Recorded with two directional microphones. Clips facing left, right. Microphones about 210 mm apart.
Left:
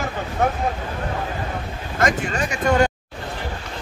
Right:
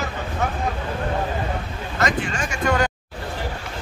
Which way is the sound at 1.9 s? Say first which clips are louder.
Left 2 dB; 50° left (ahead or behind).